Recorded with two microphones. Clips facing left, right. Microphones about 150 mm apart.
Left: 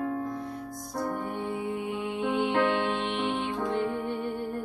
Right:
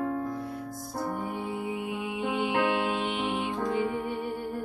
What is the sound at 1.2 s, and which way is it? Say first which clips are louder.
Music: left 1 dB; 10° right (ahead or behind).